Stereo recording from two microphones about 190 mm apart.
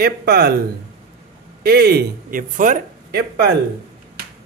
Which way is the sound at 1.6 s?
55° right (ahead or behind).